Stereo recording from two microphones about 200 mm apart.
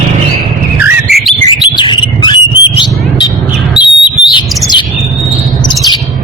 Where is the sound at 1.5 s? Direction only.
25° left (ahead or behind).